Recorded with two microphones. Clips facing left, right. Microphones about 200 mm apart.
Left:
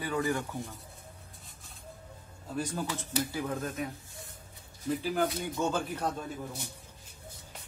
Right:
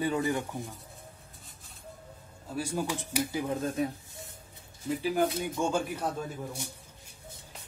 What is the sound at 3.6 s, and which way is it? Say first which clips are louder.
Speech: right 5 dB; 30° right (ahead or behind).